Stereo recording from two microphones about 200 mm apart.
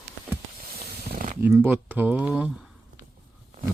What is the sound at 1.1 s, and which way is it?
Mechanisms, 45° right (ahead or behind).